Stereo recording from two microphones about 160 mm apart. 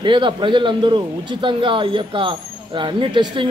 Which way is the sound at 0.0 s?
30° right (ahead or behind).